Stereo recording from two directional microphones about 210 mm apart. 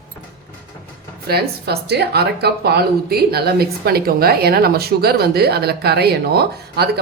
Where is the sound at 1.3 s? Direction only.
50° right (ahead or behind).